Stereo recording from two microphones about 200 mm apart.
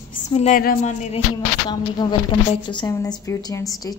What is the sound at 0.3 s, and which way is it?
Speech, 30° left (ahead or behind).